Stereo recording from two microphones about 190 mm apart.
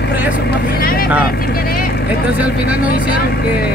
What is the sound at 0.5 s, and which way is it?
Vehicle, 50° left (ahead or behind).